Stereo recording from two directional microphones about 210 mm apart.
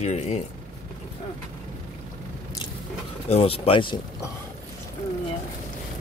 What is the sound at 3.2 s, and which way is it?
Speech, 25° left (ahead or behind).